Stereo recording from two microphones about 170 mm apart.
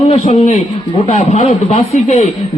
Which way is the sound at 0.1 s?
40° left (ahead or behind).